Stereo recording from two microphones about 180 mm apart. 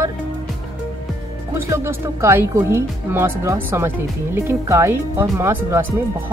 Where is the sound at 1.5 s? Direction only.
15° right (ahead or behind).